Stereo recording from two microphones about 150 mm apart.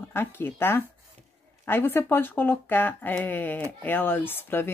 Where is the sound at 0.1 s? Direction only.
15° left (ahead or behind).